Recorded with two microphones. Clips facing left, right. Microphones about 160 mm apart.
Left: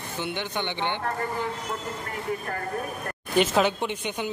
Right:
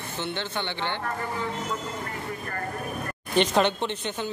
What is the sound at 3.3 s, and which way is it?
Speech, 5° left (ahead or behind).